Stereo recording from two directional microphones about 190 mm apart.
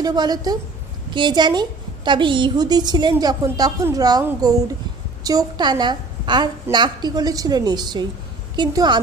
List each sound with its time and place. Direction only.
0.0 s a woman's voice: 20° right (ahead or behind)